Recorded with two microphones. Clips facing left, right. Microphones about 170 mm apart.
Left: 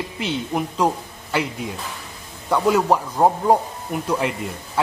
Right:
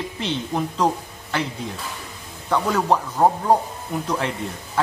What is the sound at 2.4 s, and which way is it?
Speech, 10° left (ahead or behind).